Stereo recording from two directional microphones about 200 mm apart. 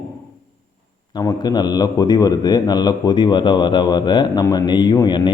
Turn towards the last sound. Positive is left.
turn(degrees=20)  # may be behind; listen again after turning